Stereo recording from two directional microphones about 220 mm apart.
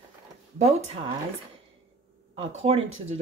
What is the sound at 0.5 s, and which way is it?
Speech, 30° right (ahead or behind).